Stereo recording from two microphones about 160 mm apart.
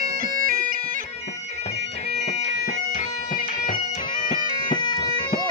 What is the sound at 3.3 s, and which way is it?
Bagpipes, 60° left (ahead or behind).